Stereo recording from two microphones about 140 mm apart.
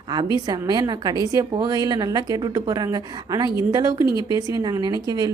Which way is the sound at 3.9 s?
35° left (ahead or behind).